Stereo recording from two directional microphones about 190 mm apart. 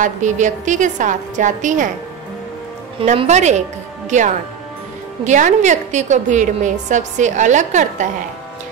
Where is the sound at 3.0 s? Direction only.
35° right (ahead or behind).